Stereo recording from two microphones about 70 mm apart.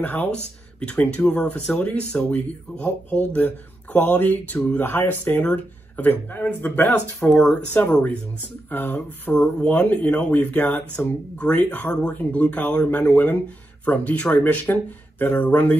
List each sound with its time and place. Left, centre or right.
0.0 s speech: left
4.7 s speech: left
7.2 s speech: centre
7.7 s speech: left